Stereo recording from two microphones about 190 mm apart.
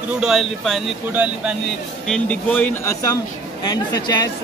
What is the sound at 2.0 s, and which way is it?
Speech, 5° left (ahead or behind).